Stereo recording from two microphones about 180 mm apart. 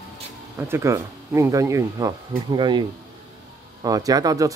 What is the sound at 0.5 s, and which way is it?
Speech, 15° right (ahead or behind).